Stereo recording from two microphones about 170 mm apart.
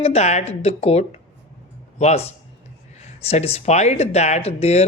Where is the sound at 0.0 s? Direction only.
40° left (ahead or behind).